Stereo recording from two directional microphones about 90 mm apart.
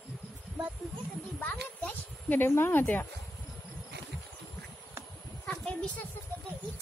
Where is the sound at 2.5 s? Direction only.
25° left (ahead or behind).